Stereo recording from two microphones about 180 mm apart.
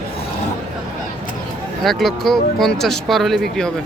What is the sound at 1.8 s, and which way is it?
Speech, centre (ahead or behind).